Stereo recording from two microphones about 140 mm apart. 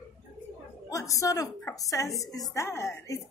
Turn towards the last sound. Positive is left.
turn(degrees=20)  # may be behind; listen again after turning